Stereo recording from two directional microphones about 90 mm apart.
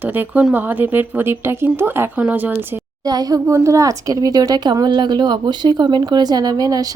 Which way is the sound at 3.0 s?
45° right (ahead or behind).